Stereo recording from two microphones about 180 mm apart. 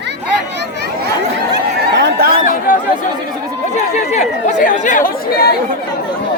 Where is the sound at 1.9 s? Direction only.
60° right (ahead or behind).